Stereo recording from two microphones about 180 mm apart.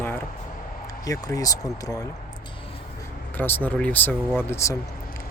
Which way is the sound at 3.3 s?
10° left (ahead or behind).